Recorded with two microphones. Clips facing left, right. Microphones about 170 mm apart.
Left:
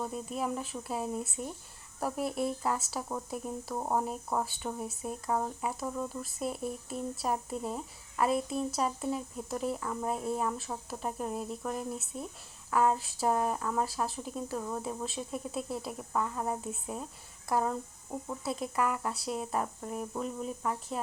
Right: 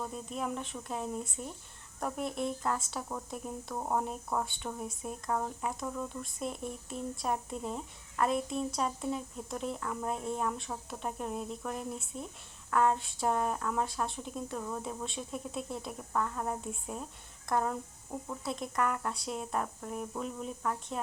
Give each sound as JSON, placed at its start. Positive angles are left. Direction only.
{"t": 0.0, "sound": "speech", "side_deg": 5}